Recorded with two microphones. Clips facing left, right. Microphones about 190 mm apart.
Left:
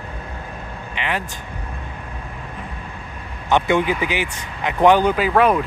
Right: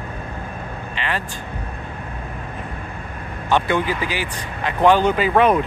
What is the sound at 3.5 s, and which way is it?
Speech, 20° left (ahead or behind).